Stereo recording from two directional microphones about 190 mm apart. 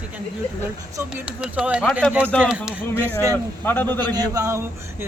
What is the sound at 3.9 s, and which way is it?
Speech, 20° right (ahead or behind).